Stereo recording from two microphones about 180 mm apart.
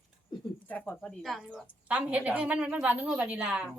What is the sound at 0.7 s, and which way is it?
A woman's voice, 10° left (ahead or behind).